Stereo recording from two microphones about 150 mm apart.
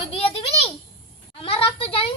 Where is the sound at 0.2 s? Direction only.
40° left (ahead or behind).